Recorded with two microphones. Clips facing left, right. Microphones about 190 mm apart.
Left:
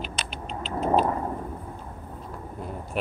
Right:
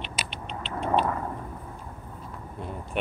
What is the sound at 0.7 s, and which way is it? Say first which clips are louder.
Vehicle: left 4 dB; 35° left (ahead or behind).